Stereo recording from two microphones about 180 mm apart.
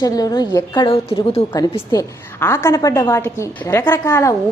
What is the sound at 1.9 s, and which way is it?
A woman's voice, 15° left (ahead or behind).